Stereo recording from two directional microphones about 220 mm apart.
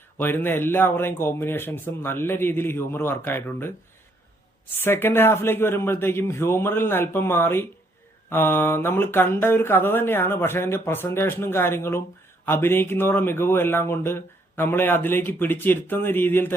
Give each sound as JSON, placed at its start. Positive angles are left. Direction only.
{"t": 0.2, "sound": "speech", "side_deg": 10}
{"t": 4.8, "sound": "speech", "side_deg": 10}